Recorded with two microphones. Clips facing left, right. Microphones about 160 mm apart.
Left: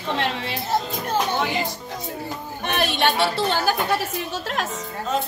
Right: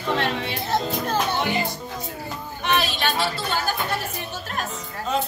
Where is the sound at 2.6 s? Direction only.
55° left (ahead or behind).